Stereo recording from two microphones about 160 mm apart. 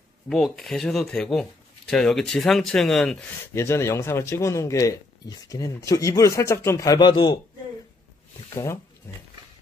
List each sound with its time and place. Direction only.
0.3 s speech: centre (ahead or behind)
3.5 s speech: 15° left (ahead or behind)